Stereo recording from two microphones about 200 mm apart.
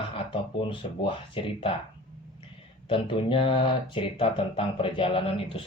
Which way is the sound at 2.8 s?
25° left (ahead or behind).